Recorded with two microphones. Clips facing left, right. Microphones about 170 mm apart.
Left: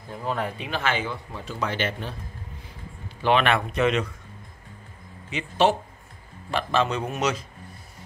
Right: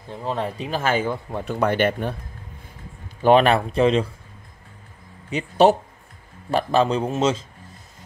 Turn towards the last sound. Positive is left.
turn(degrees=-25)  # may be behind; listen again after turning